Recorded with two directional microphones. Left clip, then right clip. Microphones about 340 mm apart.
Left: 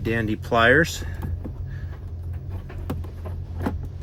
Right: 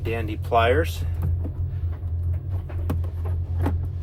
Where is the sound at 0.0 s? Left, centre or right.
Left.